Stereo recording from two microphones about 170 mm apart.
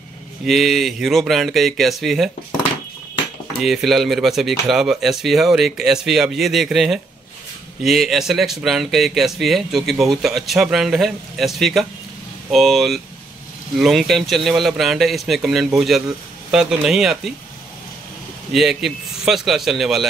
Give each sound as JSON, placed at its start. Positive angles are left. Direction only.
{"t": 0.5, "sound": "speech", "side_deg": 0}
{"t": 3.6, "sound": "speech", "side_deg": 0}
{"t": 18.5, "sound": "speech", "side_deg": 0}